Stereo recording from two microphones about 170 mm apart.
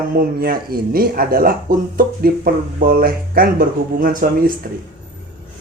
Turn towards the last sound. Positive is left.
turn(degrees=-55)  # may be behind; listen again after turning